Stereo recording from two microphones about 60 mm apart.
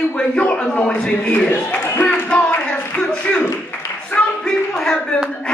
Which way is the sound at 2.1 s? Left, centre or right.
Left.